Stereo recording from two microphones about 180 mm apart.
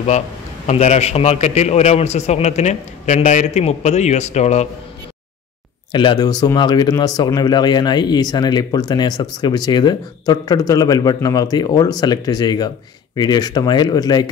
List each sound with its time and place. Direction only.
0.7 s a man's voice: 40° left (ahead or behind)
5.9 s speech: 25° left (ahead or behind)